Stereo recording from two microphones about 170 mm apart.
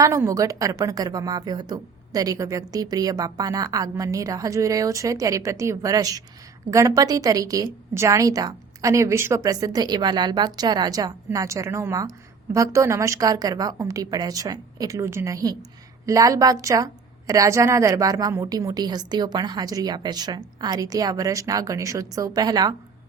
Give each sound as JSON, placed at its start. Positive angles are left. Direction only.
{"t": 0.0, "sound": "a woman's voice", "side_deg": -20}